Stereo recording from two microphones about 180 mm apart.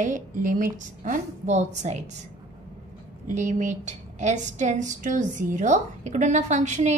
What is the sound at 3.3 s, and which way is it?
A woman's voice, 45° right (ahead or behind).